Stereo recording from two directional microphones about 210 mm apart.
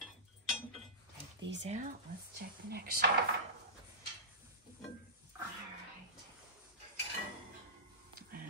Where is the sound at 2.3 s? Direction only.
45° right (ahead or behind).